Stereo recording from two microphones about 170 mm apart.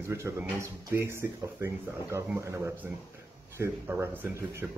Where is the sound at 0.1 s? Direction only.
15° right (ahead or behind).